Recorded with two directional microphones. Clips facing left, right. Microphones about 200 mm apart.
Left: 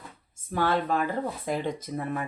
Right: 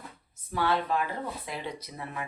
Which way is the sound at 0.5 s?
45° left (ahead or behind).